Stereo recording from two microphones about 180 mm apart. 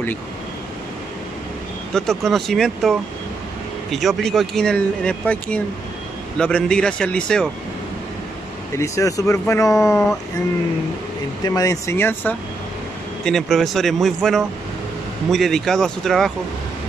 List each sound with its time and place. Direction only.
2.0 s speech: centre (ahead or behind)
8.7 s speech: 15° left (ahead or behind)
11.4 s speech: 20° left (ahead or behind); by 16.3 s centre (ahead or behind)